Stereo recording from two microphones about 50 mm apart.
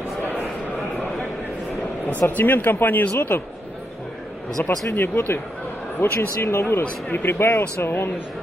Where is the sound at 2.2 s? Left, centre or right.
Left.